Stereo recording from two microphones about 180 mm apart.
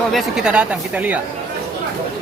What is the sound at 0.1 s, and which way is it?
Speech, centre (ahead or behind).